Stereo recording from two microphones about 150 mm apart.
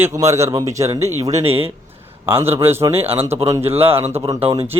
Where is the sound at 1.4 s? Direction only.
40° right (ahead or behind).